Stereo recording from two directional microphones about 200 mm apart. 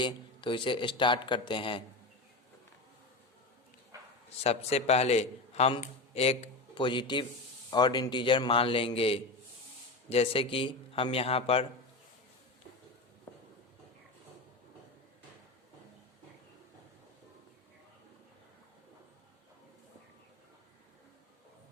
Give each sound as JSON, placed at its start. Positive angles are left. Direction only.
{"t": 0.0, "sound": "a man's voice", "side_deg": 25}
{"t": 3.9, "sound": "bow-wow", "side_deg": -15}
{"t": 4.4, "sound": "a man's voice", "side_deg": 30}
{"t": 13.3, "sound": "a sound", "side_deg": 10}